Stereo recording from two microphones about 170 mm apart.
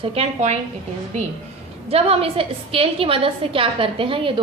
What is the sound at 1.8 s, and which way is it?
A woman's voice, 35° right (ahead or behind).